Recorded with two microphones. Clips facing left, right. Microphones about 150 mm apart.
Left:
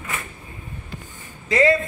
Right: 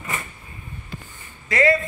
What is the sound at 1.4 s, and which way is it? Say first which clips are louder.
Speech: left 2 dB; 25° left (ahead or behind).